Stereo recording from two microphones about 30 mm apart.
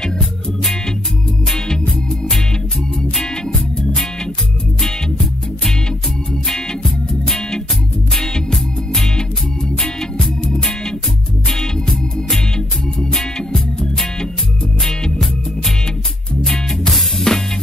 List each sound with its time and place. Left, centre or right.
2.0 s music: left
10.4 s music: left
16.4 s music: centre